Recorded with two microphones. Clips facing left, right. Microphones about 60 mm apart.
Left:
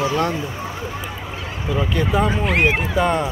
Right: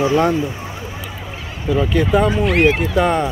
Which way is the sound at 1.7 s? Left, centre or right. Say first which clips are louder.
Right 5 dB; centre.